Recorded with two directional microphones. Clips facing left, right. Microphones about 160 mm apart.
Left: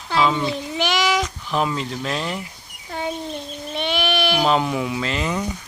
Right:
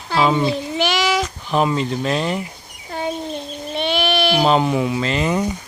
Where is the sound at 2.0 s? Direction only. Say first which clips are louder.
Right 4 dB; 5° right (ahead or behind).